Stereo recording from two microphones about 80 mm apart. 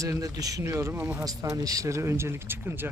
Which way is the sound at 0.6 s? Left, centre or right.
Right.